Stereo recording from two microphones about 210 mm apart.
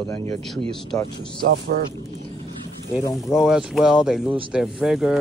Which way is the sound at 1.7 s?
45° right (ahead or behind).